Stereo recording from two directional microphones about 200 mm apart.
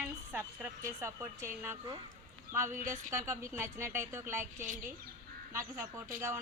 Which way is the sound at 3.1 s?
15° right (ahead or behind).